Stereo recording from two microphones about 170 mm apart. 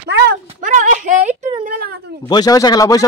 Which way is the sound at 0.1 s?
75° right (ahead or behind).